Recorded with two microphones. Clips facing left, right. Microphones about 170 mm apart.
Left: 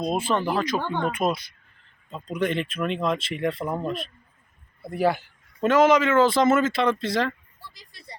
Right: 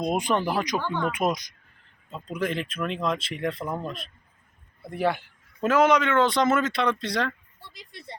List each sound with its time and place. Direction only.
0.0 s speech: 15° right (ahead or behind)
0.8 s speech: 30° left (ahead or behind)
1.1 s speech: 15° right (ahead or behind)
2.0 s speech: 5° right (ahead or behind)